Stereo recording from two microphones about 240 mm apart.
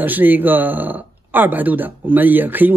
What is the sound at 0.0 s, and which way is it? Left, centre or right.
Speech, centre.